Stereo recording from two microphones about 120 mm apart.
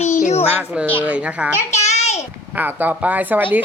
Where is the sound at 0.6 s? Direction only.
10° right (ahead or behind).